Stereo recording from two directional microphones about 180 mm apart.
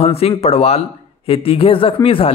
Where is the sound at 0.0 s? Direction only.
35° left (ahead or behind).